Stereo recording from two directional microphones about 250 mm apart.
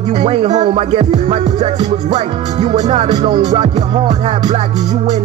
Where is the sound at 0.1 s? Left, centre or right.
Right.